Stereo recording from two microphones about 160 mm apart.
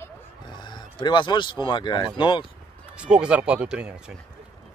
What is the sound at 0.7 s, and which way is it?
Speech, 30° left (ahead or behind).